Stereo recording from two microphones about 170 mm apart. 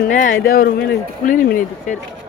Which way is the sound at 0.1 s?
55° left (ahead or behind).